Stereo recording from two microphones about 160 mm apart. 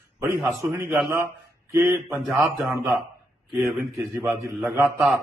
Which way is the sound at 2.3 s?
Centre (ahead or behind).